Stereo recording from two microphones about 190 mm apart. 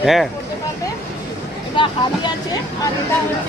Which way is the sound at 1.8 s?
25° left (ahead or behind).